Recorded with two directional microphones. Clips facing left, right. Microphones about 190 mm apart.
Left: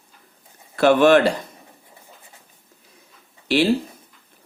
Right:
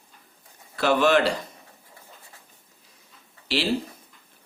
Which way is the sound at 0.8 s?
50° left (ahead or behind).